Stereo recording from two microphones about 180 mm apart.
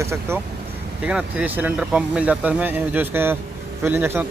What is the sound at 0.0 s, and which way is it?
Speech, 15° right (ahead or behind).